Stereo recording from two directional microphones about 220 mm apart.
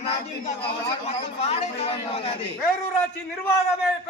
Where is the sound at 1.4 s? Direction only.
25° left (ahead or behind).